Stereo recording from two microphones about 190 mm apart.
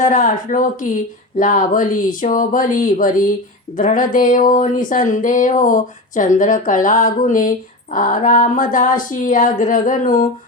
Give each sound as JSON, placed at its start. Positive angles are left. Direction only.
{"t": 0.0, "sound": "speech", "side_deg": 40}